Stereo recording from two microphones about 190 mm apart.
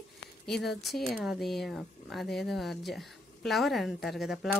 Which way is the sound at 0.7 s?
Centre (ahead or behind).